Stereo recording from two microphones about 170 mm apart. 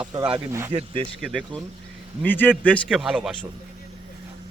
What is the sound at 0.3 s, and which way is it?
Speech, 15° right (ahead or behind).